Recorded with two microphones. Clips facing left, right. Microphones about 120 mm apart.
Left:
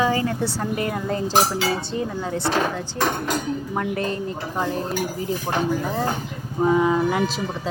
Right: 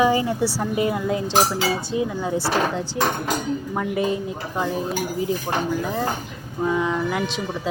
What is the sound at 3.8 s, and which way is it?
Speech, 10° right (ahead or behind).